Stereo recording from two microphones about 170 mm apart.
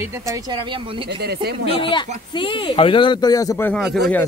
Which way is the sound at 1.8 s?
30° left (ahead or behind).